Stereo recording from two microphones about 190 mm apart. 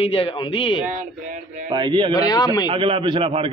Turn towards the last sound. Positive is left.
turn(degrees=-25)  # may be behind; listen again after turning